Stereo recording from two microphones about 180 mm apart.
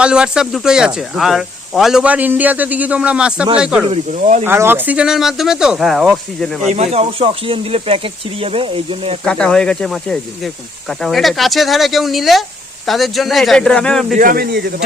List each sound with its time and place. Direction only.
0.0 s speech: 5° right (ahead or behind)
3.8 s speech: 40° right (ahead or behind)
4.4 s speech: 15° right (ahead or behind)
6.7 s speech: 40° right (ahead or behind)
9.2 s speech: 5° left (ahead or behind)
14.2 s speech: 55° right (ahead or behind)